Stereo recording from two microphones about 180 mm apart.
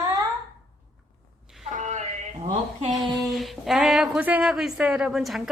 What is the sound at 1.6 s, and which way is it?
Speech, 40° right (ahead or behind).